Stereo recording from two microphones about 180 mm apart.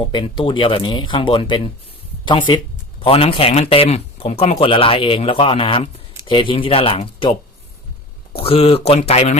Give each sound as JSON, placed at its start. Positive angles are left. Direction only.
{"t": 0.1, "sound": "speech", "side_deg": 25}